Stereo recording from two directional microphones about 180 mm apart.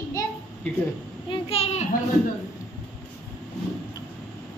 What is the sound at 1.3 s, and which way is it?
Speech, 35° left (ahead or behind).